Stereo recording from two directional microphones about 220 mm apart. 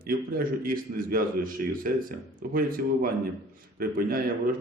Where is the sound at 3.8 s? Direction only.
40° right (ahead or behind).